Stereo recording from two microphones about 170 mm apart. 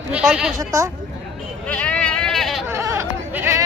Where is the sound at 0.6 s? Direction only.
20° right (ahead or behind).